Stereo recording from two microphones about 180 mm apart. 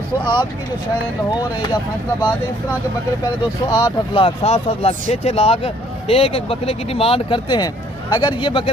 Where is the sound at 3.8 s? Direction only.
30° left (ahead or behind).